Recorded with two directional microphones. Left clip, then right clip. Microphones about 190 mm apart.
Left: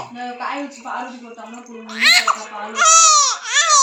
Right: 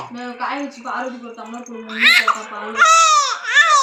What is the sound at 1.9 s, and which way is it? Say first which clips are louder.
Speech: right 1 dB; 20° left (ahead or behind).